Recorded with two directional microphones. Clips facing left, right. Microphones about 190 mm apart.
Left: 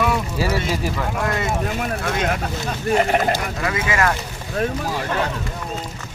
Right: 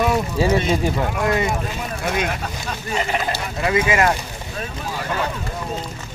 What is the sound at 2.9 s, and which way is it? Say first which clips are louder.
Speech: left 6 dB; 55° left (ahead or behind).